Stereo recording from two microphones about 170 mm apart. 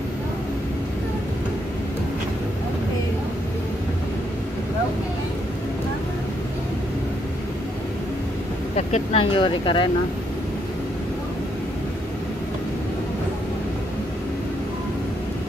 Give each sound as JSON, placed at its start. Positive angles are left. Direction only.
{"t": 8.7, "sound": "speech", "side_deg": 40}